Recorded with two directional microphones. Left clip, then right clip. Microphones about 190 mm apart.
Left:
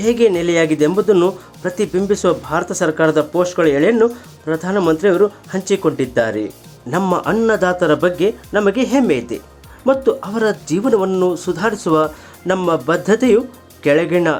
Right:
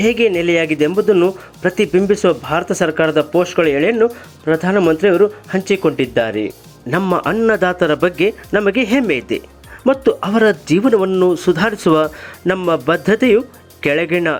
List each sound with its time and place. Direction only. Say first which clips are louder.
0.0 s speech: even; 15° right (ahead or behind)